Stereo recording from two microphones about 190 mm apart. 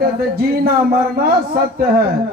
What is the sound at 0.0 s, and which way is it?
Speech, 55° right (ahead or behind).